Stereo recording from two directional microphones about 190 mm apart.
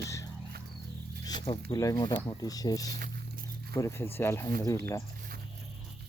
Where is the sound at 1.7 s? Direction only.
20° left (ahead or behind).